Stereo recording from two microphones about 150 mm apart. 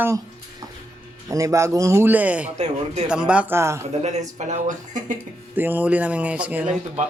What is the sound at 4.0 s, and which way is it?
Speech, 50° right (ahead or behind).